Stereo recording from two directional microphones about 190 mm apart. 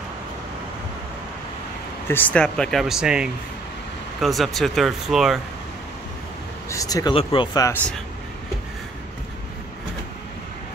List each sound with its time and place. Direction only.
2.0 s speech: 10° left (ahead or behind)
6.7 s speech: 15° left (ahead or behind)